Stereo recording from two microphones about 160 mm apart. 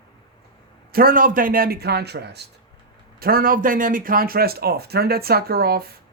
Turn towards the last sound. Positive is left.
turn(degrees=-75)  # may be behind; listen again after turning